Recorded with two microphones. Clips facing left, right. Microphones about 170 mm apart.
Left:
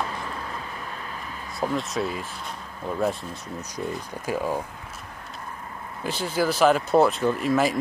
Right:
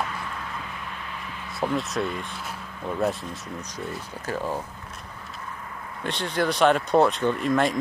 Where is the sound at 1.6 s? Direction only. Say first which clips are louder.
Even; centre (ahead or behind).